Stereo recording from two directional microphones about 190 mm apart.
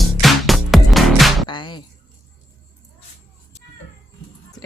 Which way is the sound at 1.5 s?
25° left (ahead or behind).